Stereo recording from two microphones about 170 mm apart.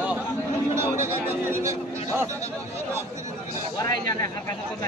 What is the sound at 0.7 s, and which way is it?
A man's voice, 15° right (ahead or behind).